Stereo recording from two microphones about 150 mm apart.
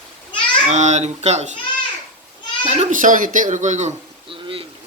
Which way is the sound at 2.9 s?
60° right (ahead or behind).